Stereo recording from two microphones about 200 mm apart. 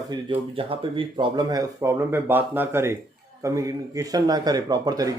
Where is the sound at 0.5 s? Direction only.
25° right (ahead or behind).